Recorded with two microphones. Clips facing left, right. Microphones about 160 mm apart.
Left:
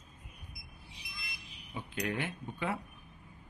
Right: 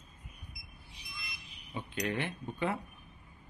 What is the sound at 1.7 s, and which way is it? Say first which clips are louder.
Speech: right 1 dB; centre (ahead or behind).